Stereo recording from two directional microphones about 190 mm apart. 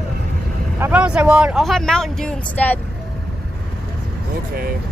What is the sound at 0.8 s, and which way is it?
Speech, 5° right (ahead or behind).